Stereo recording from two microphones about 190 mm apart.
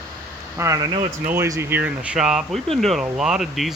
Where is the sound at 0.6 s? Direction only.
15° right (ahead or behind).